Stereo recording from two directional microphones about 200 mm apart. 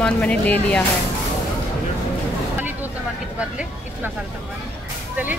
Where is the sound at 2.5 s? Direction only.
10° right (ahead or behind).